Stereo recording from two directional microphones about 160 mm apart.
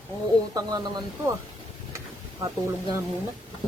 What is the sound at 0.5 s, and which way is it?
Speech, 25° right (ahead or behind).